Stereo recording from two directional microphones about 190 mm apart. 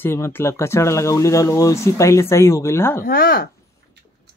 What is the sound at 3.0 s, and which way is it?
Speech, 55° left (ahead or behind).